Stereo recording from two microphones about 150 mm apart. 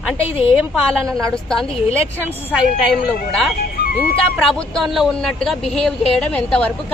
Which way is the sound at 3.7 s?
85° left.